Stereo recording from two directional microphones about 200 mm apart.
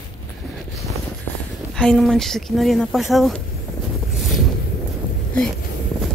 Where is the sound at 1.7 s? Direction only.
5° left (ahead or behind).